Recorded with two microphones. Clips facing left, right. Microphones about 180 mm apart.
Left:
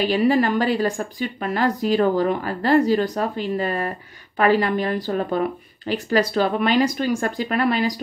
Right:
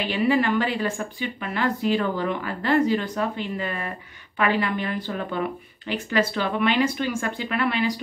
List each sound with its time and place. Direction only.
0.0 s a woman's voice: 40° left (ahead or behind)